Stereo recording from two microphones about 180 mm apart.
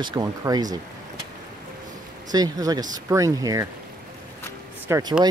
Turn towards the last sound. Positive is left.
turn(degrees=-15)  # may be behind; listen again after turning